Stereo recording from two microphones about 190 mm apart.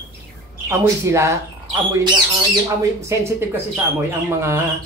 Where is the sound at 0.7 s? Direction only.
15° right (ahead or behind).